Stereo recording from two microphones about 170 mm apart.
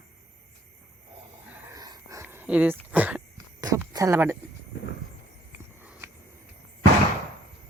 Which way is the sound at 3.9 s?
20° right (ahead or behind).